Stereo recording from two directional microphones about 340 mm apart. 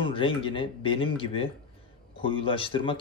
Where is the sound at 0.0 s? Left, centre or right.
Centre.